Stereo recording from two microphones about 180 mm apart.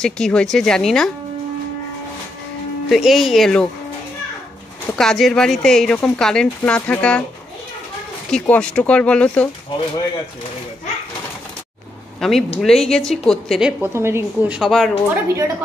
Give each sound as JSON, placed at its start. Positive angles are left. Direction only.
{"t": 0.0, "sound": "speech", "side_deg": 5}
{"t": 2.9, "sound": "speech", "side_deg": 0}
{"t": 4.9, "sound": "speech", "side_deg": 0}
{"t": 8.3, "sound": "speech", "side_deg": 5}
{"t": 12.2, "sound": "speech", "side_deg": 0}
{"t": 15.2, "sound": "a woman's voice", "side_deg": -15}